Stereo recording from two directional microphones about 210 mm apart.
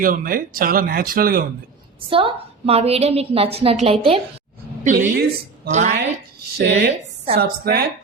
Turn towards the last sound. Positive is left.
turn(degrees=-50)  # may be behind; listen again after turning